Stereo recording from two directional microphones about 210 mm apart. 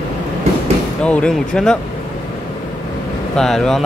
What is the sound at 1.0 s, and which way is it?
Speech, 5° left (ahead or behind).